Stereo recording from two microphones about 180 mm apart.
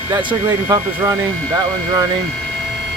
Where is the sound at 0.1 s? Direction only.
15° right (ahead or behind).